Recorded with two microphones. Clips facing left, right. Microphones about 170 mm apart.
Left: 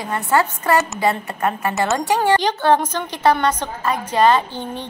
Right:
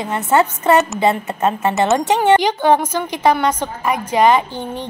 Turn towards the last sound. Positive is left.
turn(degrees=-15)  # may be behind; listen again after turning